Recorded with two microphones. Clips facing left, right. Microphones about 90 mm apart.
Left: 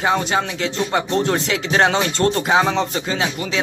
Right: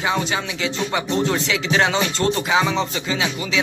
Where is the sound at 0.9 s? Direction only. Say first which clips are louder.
Left 2 dB; 40° left (ahead or behind).